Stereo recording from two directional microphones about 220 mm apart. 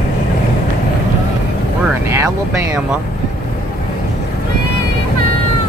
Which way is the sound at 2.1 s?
10° right (ahead or behind).